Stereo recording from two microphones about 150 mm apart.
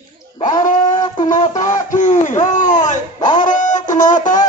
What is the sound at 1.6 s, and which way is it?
Speech, 55° left (ahead or behind).